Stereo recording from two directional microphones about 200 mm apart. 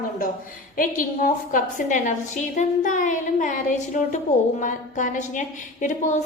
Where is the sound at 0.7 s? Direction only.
45° left (ahead or behind).